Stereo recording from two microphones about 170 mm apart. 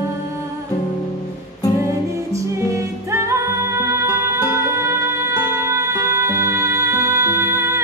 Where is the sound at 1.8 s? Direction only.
20° right (ahead or behind).